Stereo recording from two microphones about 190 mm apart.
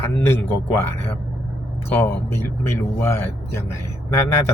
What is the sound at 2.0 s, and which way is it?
Speech, 10° left (ahead or behind).